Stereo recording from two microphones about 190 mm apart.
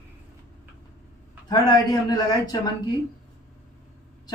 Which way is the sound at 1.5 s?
20° left (ahead or behind).